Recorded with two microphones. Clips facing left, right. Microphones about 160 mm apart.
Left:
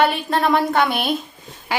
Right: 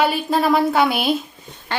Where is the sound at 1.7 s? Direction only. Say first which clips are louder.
Left 2 dB; 10° left (ahead or behind).